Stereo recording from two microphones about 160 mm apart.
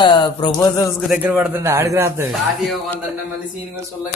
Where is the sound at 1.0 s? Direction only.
10° right (ahead or behind).